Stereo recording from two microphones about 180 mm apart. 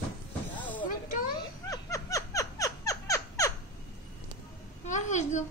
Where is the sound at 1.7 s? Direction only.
20° left (ahead or behind).